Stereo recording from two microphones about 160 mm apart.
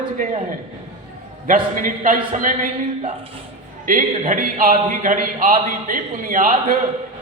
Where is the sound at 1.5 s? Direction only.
55° right (ahead or behind).